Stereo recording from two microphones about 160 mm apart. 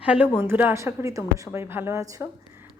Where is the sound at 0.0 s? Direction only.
5° right (ahead or behind).